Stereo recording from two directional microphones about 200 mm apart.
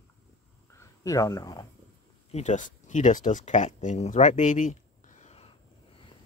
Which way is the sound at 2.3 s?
35° left (ahead or behind).